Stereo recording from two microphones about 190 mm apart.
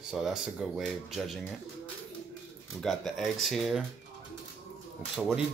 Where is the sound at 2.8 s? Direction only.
Centre (ahead or behind).